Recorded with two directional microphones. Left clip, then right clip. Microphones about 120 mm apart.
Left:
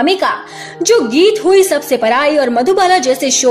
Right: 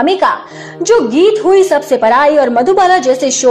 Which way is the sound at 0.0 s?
15° left (ahead or behind).